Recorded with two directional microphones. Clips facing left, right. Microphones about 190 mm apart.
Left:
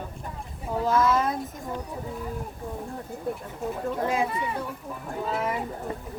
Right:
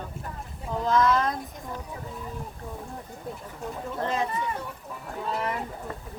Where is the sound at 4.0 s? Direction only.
10° left (ahead or behind).